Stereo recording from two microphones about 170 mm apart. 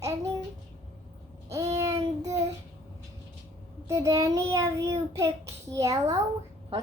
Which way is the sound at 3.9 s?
20° right (ahead or behind).